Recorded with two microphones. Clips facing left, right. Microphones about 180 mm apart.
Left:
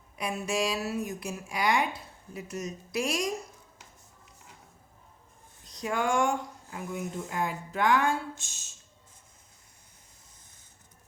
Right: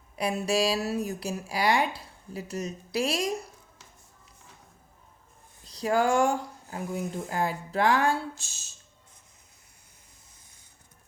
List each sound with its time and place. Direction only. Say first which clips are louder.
0.2 s speech: right 4 dB; 35° right (ahead or behind)
5.6 s speech: right 5 dB; 35° right (ahead or behind)